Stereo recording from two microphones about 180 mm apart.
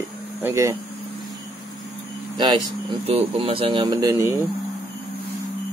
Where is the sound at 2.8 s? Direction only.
35° right (ahead or behind); by 4.4 s 15° right (ahead or behind).